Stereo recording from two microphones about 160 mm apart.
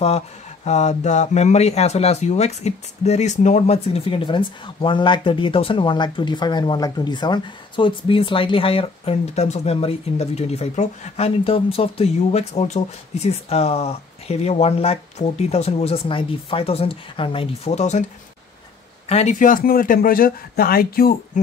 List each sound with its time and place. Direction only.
0.7 s speech: 45° left (ahead or behind)
19.0 s speech: 45° left (ahead or behind); by 21.1 s 70° left (ahead or behind)